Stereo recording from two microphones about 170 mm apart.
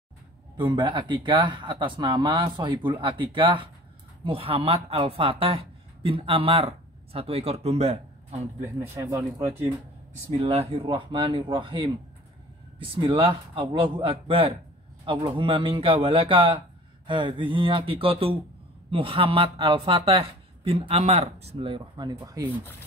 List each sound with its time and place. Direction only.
0.6 s speech: 30° right (ahead or behind)
8.9 s speech: 15° right (ahead or behind)
10.4 s a man's voice: 35° right (ahead or behind)